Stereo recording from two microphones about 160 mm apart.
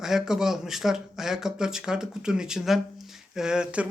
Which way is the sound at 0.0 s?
5° right (ahead or behind).